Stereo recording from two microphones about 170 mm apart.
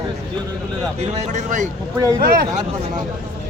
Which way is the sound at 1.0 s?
40° right (ahead or behind).